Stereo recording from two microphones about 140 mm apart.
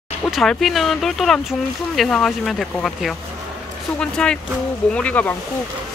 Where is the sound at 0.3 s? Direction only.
Centre (ahead or behind).